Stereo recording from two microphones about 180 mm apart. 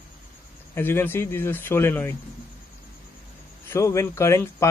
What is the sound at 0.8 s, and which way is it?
Speech, 10° left (ahead or behind).